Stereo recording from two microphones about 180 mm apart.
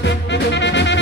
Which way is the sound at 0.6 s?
80° left.